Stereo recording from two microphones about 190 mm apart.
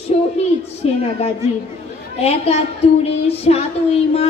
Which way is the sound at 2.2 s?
30° left (ahead or behind).